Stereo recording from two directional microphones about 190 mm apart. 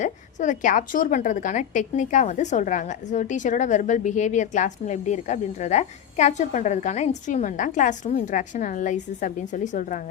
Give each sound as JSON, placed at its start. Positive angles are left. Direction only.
{"t": 0.0, "sound": "a woman's voice", "side_deg": 40}